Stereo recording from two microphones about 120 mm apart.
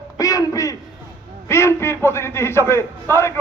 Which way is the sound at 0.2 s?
30° left (ahead or behind).